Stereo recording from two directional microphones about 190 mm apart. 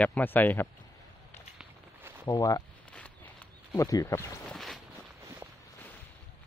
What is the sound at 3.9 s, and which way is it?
Speech, 15° left (ahead or behind).